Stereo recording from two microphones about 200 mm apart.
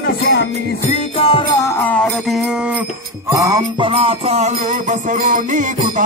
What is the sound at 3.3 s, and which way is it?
Music, 15° right (ahead or behind).